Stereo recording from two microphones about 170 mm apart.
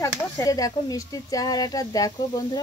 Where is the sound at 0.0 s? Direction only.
20° left (ahead or behind).